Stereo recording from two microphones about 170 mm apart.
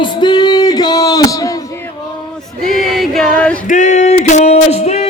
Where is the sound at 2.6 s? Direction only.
Centre (ahead or behind).